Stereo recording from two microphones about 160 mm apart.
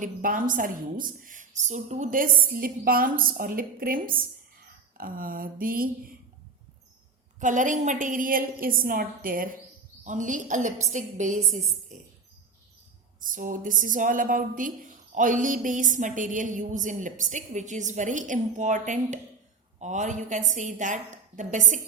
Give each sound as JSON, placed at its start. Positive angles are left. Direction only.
{"t": 0.0, "sound": "a woman's voice", "side_deg": -55}
{"t": 7.3, "sound": "a woman's voice", "side_deg": -50}
{"t": 13.1, "sound": "a woman's voice", "side_deg": -60}